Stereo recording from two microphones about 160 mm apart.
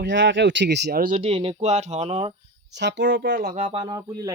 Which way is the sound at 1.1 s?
35° right (ahead or behind).